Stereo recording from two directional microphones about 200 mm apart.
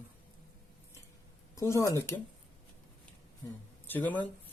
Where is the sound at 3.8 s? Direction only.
10° left (ahead or behind).